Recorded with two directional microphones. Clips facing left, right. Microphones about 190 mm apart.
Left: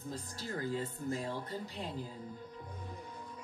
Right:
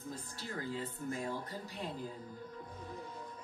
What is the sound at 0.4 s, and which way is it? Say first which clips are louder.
Speech: left 4 dB; 40° left (ahead or behind).